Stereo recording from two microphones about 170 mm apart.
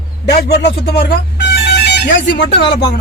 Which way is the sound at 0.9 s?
85° left.